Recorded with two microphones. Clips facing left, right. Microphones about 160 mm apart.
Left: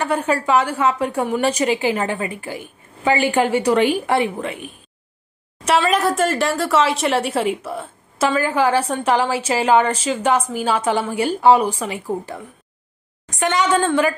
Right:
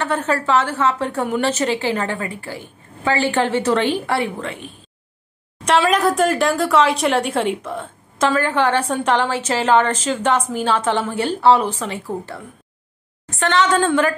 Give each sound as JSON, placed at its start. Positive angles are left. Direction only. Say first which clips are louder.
{"t": 0.0, "sound": "a woman's voice", "louder": "left 1 dB", "side_deg": 10}
{"t": 5.8, "sound": "a woman's voice", "louder": "right 2 dB", "side_deg": 0}